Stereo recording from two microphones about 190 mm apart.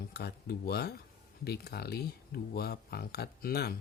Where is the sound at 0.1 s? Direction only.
60° left (ahead or behind).